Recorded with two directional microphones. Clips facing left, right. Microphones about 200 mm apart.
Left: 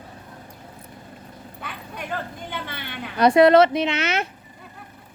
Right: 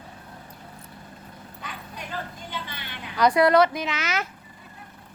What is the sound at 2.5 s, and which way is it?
Vehicle, 55° left (ahead or behind).